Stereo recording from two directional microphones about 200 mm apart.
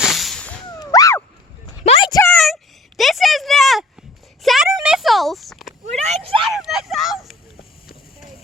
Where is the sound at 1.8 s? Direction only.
30° left (ahead or behind).